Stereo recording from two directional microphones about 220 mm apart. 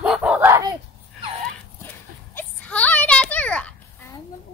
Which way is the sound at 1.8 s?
10° left (ahead or behind).